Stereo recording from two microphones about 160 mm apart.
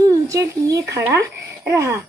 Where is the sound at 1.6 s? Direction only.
15° right (ahead or behind).